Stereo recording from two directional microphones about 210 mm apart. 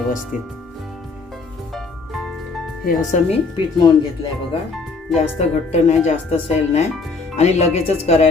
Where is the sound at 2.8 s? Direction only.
35° left (ahead or behind).